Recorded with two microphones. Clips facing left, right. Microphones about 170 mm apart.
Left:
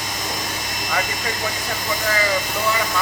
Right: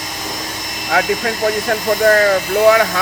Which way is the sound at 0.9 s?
75° right (ahead or behind).